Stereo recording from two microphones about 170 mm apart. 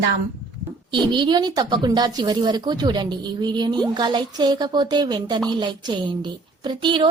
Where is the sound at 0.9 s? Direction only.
30° right (ahead or behind).